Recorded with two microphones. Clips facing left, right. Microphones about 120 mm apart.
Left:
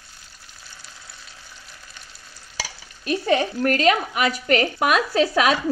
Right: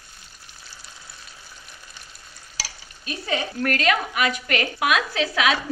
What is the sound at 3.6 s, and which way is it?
Speech, 30° left (ahead or behind).